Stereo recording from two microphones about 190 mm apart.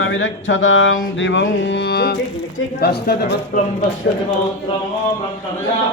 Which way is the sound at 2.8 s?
60° left (ahead or behind).